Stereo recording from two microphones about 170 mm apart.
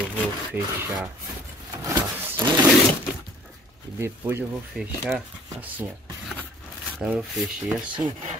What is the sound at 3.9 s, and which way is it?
Speech, 15° right (ahead or behind).